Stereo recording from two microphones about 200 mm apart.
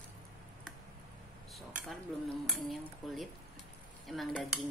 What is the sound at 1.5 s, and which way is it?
A woman's voice, centre (ahead or behind).